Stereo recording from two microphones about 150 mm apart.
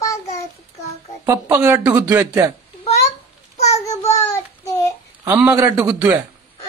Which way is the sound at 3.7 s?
20° left (ahead or behind).